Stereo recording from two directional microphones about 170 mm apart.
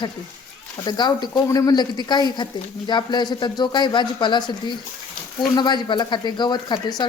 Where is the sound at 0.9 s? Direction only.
25° left (ahead or behind).